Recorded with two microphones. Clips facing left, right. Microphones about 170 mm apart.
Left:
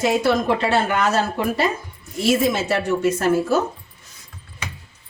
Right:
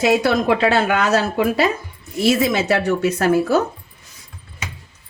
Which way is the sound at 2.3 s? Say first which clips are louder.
Right 1 dB; 75° right (ahead or behind).